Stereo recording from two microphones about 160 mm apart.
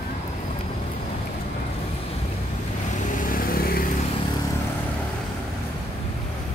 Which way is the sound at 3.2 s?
60° left (ahead or behind).